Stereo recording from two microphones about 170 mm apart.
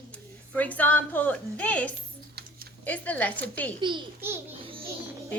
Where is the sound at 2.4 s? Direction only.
75° right (ahead or behind).